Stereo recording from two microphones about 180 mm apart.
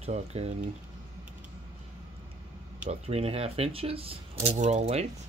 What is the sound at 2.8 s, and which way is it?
Speech, 35° right (ahead or behind).